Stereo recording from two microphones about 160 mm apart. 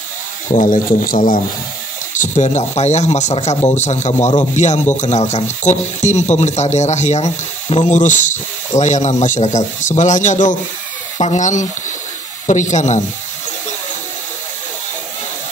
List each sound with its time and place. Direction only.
0.5 s speech: 55° left (ahead or behind)
2.1 s speech: 45° left (ahead or behind)